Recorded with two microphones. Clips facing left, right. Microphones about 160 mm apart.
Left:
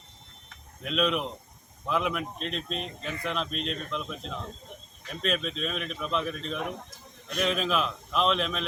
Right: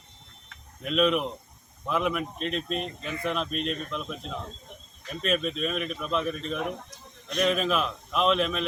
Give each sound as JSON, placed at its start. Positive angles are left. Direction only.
{"t": 0.8, "sound": "speech", "side_deg": 0}
{"t": 5.2, "sound": "speech", "side_deg": -5}